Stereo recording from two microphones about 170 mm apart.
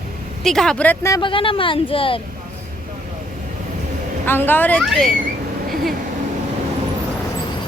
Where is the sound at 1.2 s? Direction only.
30° left (ahead or behind).